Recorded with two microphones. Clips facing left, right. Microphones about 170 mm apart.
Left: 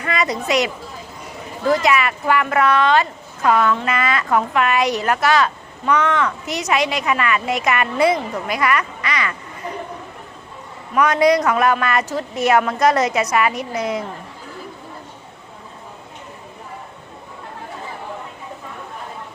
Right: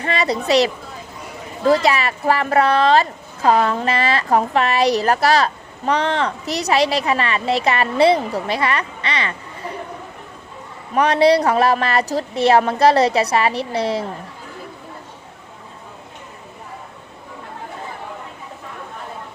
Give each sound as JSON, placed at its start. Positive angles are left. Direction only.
{"t": 0.0, "sound": "a woman's voice", "side_deg": -30}
{"t": 10.9, "sound": "speech", "side_deg": -30}